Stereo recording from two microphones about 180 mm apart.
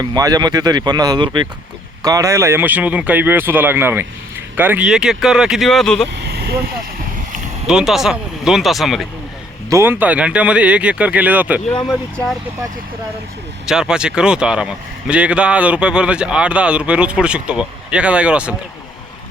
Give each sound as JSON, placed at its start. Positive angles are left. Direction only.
{"t": 0.0, "sound": "speech", "side_deg": -20}
{"t": 6.1, "sound": "vehicle", "side_deg": -65}
{"t": 7.7, "sound": "a man's voice", "side_deg": -5}
{"t": 9.6, "sound": "speech", "side_deg": -15}
{"t": 11.9, "sound": "a man's voice", "side_deg": 0}
{"t": 13.7, "sound": "a man's voice", "side_deg": -5}